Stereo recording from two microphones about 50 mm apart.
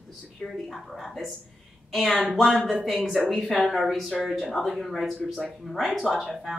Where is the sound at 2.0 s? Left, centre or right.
Right.